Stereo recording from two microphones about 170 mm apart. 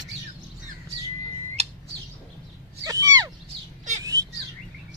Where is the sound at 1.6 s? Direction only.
35° right (ahead or behind).